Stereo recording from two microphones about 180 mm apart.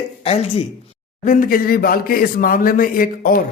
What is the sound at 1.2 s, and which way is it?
A man's voice, 50° left (ahead or behind).